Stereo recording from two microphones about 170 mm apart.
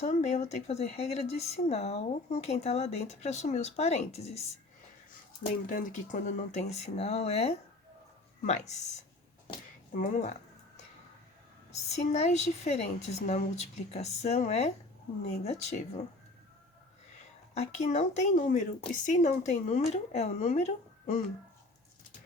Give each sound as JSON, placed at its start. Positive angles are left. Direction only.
{"t": 0.0, "sound": "speech", "side_deg": 45}
{"t": 5.6, "sound": "speech", "side_deg": 50}
{"t": 9.9, "sound": "speech", "side_deg": 45}
{"t": 11.7, "sound": "speech", "side_deg": 40}
{"t": 17.5, "sound": "speech", "side_deg": 40}